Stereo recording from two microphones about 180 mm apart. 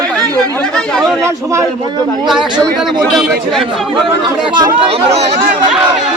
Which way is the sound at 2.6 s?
Centre (ahead or behind).